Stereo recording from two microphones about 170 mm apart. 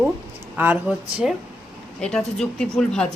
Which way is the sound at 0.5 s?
10° right (ahead or behind).